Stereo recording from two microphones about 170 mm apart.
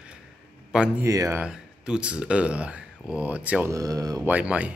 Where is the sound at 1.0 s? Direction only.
20° right (ahead or behind).